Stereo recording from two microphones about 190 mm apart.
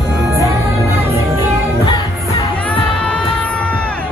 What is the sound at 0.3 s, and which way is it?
Music, 15° right (ahead or behind).